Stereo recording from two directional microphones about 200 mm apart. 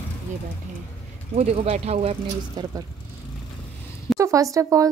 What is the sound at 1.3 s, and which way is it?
Speech, 30° right (ahead or behind).